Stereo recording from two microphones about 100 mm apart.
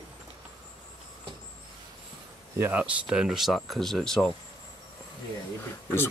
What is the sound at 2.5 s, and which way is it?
Speech, 25° right (ahead or behind).